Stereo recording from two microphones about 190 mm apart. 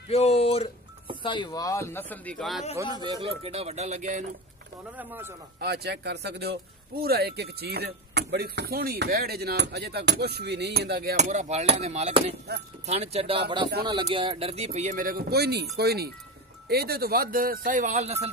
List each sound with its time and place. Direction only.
0.1 s speech: 30° left (ahead or behind); by 2.6 s centre (ahead or behind)
2.8 s speech: 20° right (ahead or behind); by 4.2 s 40° right (ahead or behind)
4.9 s speech: 10° right (ahead or behind)
5.6 s speech: 60° right (ahead or behind)
11.1 s speech: 40° right (ahead or behind)